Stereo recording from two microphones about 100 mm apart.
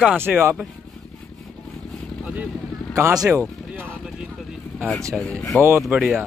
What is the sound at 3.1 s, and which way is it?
Speech, 35° right (ahead or behind).